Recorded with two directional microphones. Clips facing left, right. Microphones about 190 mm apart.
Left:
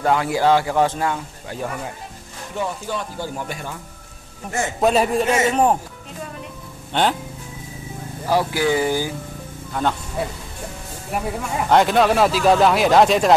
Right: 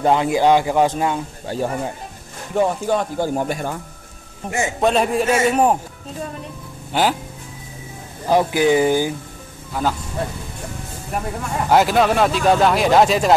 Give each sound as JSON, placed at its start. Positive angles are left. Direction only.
{"t": 0.0, "sound": "speech", "side_deg": -20}
{"t": 1.5, "sound": "speech", "side_deg": -30}
{"t": 2.5, "sound": "music", "side_deg": -50}
{"t": 4.7, "sound": "speech", "side_deg": 0}
{"t": 6.9, "sound": "speech", "side_deg": -5}
{"t": 8.3, "sound": "speech", "side_deg": -20}
{"t": 9.8, "sound": "speech", "side_deg": -5}
{"t": 11.1, "sound": "speech", "side_deg": 5}